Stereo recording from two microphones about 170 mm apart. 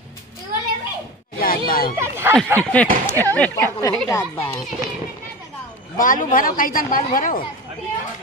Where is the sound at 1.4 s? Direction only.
60° left (ahead or behind).